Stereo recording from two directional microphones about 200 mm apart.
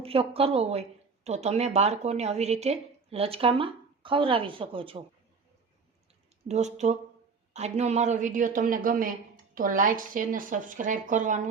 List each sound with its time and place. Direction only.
0.0 s a woman's voice: 30° right (ahead or behind)
6.5 s speech: 35° right (ahead or behind)